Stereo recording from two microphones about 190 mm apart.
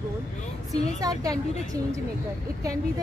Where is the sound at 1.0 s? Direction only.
20° right (ahead or behind).